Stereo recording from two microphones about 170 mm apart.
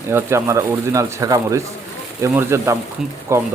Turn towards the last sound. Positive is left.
turn(degrees=-15)  # may be behind; listen again after turning